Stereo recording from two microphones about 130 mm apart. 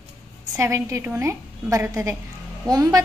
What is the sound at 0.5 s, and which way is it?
A woman's voice, 20° right (ahead or behind).